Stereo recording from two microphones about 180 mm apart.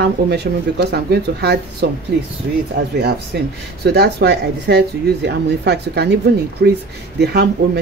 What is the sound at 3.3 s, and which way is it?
Speech, 70° right (ahead or behind).